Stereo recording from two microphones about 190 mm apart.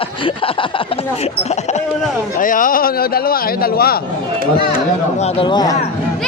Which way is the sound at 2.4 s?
45° left (ahead or behind).